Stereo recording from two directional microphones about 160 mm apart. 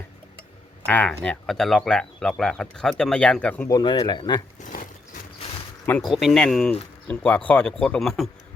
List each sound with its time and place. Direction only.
0.9 s speech: 10° left (ahead or behind)
3.7 s speech: 25° left (ahead or behind)
4.6 s a sound: 55° left (ahead or behind)
6.0 s speech: centre (ahead or behind)